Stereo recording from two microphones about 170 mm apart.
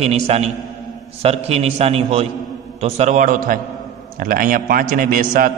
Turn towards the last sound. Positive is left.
turn(degrees=-55)  # may be behind; listen again after turning